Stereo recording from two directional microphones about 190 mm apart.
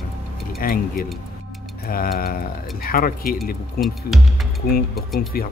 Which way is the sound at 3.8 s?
Centre (ahead or behind).